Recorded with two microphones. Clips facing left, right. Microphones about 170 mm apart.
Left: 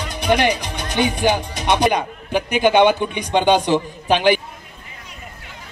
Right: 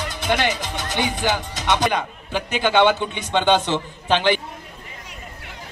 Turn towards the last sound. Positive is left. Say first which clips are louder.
# left 3 dB
turn(degrees=15)  # may be behind; listen again after turning